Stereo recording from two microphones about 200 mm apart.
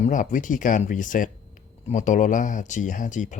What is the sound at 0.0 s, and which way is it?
Speech, 40° left (ahead or behind).